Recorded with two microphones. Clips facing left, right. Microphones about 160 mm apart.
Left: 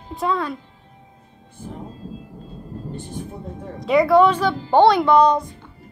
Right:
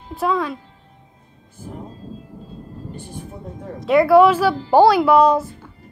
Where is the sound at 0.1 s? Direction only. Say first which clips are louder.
Right 2 dB; centre (ahead or behind).